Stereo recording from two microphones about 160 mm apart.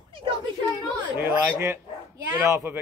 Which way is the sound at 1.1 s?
10° right (ahead or behind).